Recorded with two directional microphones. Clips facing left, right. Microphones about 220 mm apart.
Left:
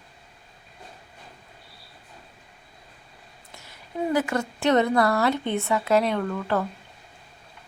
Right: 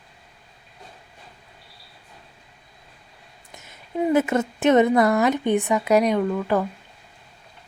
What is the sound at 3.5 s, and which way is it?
A woman's voice, 20° right (ahead or behind).